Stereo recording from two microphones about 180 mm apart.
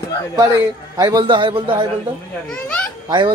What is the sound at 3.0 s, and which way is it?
Speech, 25° right (ahead or behind).